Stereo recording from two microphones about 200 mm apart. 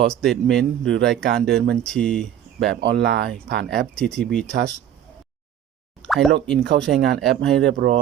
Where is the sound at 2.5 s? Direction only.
55° right (ahead or behind).